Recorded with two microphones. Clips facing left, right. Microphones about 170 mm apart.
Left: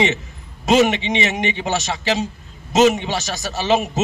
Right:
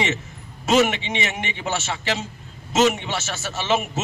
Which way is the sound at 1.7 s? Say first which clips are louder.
Left 1 dB; 40° left (ahead or behind).